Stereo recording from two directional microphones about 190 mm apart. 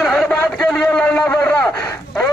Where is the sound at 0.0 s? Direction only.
Centre (ahead or behind).